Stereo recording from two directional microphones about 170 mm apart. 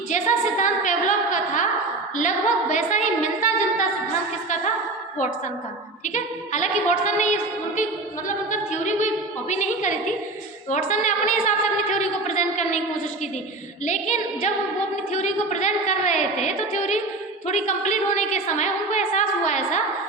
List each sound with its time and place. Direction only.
0.1 s a sound: 45° left (ahead or behind)
2.1 s a woman's voice: 45° left (ahead or behind)
6.1 s a woman's voice: 45° left (ahead or behind)
8.4 s a sound: 45° left (ahead or behind)
10.7 s a woman's voice: 45° left (ahead or behind)
13.8 s a woman's voice: 45° left (ahead or behind)